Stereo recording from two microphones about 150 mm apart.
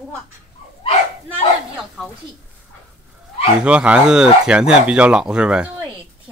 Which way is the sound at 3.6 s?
5° right (ahead or behind).